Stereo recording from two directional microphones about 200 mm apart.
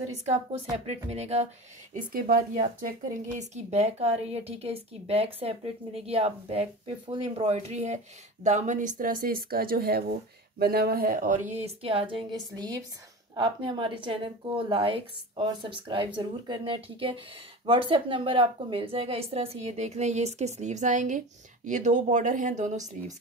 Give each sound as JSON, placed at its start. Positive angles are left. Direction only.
{"t": 0.1, "sound": "speech", "side_deg": -35}
{"t": 2.1, "sound": "a woman's voice", "side_deg": -45}